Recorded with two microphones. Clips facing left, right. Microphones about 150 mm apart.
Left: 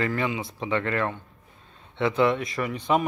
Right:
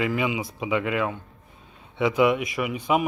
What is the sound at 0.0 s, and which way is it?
Speech, 10° right (ahead or behind).